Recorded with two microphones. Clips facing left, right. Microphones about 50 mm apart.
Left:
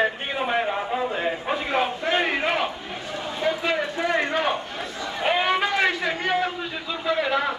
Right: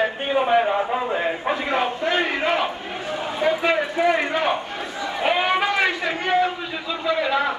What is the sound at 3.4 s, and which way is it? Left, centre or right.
A man's voice, right.